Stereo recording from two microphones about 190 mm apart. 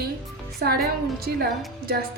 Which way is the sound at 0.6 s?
55° right (ahead or behind).